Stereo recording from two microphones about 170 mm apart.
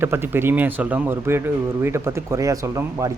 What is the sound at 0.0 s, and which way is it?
Speech, 15° right (ahead or behind).